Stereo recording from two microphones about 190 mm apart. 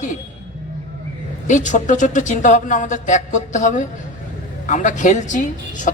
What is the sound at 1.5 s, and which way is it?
A man's voice, 40° left (ahead or behind).